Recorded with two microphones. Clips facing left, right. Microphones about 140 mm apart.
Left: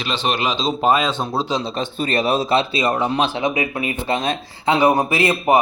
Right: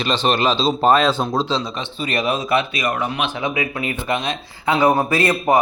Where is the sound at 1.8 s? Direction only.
35° left (ahead or behind).